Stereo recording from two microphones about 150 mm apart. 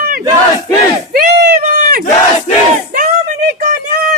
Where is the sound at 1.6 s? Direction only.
55° right (ahead or behind).